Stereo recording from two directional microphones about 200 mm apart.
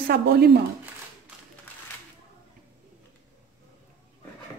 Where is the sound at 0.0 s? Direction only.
50° right (ahead or behind).